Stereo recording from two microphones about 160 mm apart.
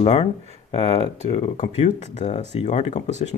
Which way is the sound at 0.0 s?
40° left (ahead or behind).